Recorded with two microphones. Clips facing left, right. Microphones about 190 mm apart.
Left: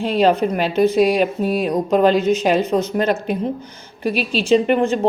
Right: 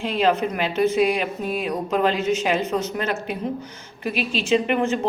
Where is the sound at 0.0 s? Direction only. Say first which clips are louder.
Left 5 dB; 35° left (ahead or behind).